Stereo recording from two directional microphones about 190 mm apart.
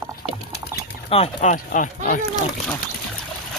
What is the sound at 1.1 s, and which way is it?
Speech, 35° left (ahead or behind).